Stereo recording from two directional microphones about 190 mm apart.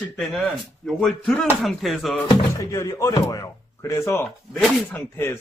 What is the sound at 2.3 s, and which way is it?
Speech, 15° left (ahead or behind).